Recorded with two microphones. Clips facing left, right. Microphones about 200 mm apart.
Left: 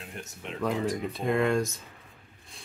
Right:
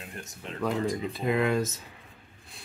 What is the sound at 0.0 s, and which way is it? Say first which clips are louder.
Speech: left 1 dB; centre (ahead or behind).